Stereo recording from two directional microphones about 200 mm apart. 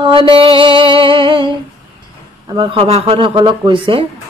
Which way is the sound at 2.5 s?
25° right (ahead or behind).